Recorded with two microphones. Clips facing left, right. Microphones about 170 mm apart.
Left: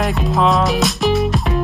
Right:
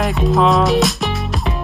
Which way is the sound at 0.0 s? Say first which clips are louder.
Right 2 dB; centre (ahead or behind).